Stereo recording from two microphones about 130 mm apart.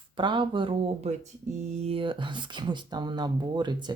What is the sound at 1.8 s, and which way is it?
Speech, 45° right (ahead or behind).